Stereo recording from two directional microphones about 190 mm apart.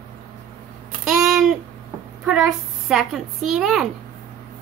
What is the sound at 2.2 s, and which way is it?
A woman's voice, 5° right (ahead or behind).